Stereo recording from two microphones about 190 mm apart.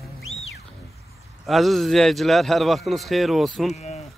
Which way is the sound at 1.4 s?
Centre (ahead or behind).